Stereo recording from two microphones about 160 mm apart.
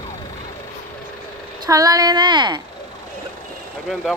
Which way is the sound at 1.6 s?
20° right (ahead or behind).